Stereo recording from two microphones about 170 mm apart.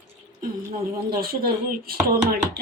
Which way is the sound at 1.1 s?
60° right (ahead or behind).